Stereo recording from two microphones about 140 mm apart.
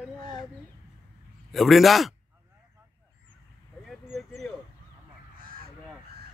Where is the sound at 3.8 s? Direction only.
Centre (ahead or behind).